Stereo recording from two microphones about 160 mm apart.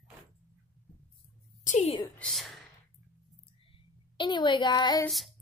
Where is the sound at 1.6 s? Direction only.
45° left (ahead or behind).